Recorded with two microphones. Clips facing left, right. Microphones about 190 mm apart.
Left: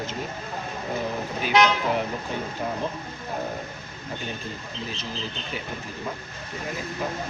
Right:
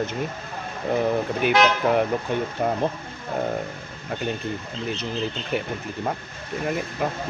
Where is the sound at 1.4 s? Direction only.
60° right (ahead or behind).